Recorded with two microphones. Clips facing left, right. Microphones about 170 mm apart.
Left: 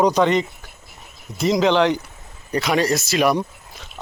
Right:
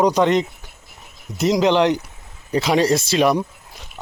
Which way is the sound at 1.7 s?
15° right (ahead or behind).